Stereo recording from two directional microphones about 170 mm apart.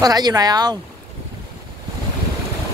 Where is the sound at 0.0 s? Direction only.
20° right (ahead or behind).